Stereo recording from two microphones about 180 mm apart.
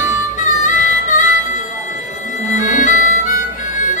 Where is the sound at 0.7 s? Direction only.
45° left (ahead or behind).